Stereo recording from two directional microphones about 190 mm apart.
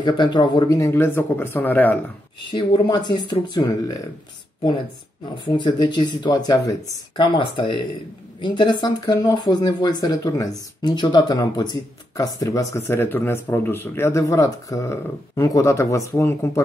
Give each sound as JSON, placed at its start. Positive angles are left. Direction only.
{"t": 0.0, "sound": "speech", "side_deg": 25}
{"t": 2.5, "sound": "speech", "side_deg": 20}
{"t": 5.3, "sound": "speech", "side_deg": 25}